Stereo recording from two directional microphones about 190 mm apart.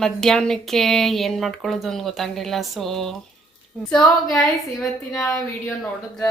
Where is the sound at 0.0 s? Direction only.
5° left (ahead or behind).